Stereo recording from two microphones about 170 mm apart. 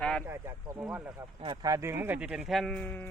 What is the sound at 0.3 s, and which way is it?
Speech, 15° right (ahead or behind).